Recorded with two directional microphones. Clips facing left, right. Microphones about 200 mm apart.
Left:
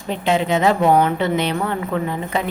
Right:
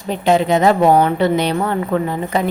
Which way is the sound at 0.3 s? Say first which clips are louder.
Right 4 dB; 40° right (ahead or behind).